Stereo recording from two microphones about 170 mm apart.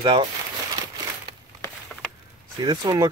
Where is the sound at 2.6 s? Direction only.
25° right (ahead or behind).